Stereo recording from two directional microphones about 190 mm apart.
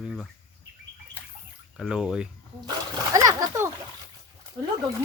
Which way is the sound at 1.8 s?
5° right (ahead or behind).